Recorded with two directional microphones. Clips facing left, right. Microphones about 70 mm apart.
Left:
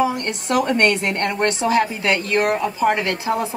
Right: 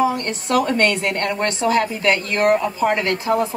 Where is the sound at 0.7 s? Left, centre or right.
Left.